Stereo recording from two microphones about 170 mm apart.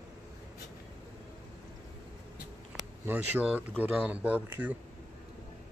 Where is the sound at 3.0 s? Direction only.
10° right (ahead or behind).